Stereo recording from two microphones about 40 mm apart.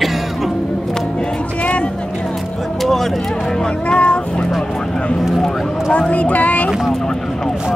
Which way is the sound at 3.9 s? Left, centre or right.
Left.